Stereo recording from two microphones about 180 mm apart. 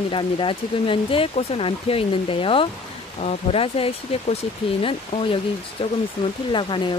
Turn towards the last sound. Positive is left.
turn(degrees=25)  # may be behind; listen again after turning